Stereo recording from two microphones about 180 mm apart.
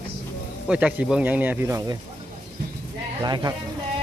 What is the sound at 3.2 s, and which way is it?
Speech, 20° right (ahead or behind).